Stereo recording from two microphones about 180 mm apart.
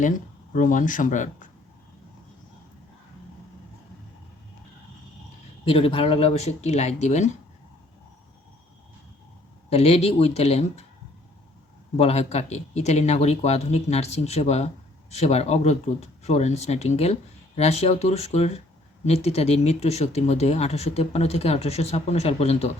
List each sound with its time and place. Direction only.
0.5 s speech: 45° left (ahead or behind)
5.6 s speech: 30° left (ahead or behind)
9.6 s speech: 35° left (ahead or behind)
11.9 s speech: 35° left (ahead or behind)